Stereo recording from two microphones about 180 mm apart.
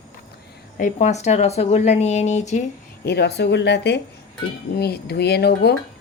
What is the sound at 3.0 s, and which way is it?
Speech, 65° left (ahead or behind).